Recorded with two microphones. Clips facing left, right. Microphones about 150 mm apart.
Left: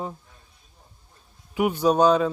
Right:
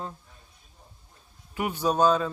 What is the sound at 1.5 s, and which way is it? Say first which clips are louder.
Speech: left 5 dB; 10° left (ahead or behind).